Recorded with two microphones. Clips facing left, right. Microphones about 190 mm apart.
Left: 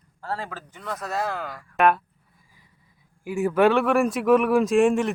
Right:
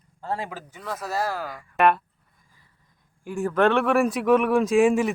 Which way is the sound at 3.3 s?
10° left (ahead or behind).